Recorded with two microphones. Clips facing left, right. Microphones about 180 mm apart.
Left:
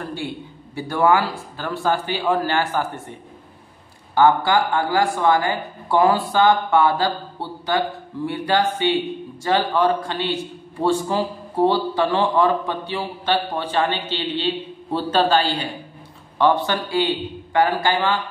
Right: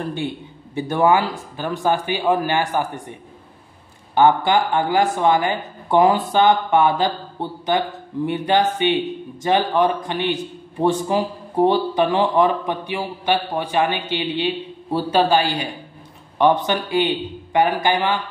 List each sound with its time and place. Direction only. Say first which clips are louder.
0.0 s a man's voice: right 3 dB; 20° right (ahead or behind)